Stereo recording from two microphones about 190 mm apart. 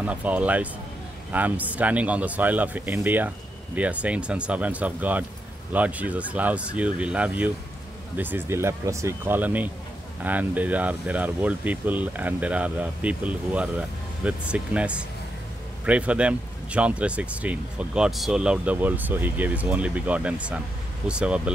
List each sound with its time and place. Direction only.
0.0 s speech: 10° right (ahead or behind)